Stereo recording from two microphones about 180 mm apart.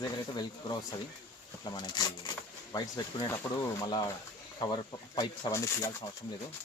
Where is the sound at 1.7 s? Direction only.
20° left (ahead or behind).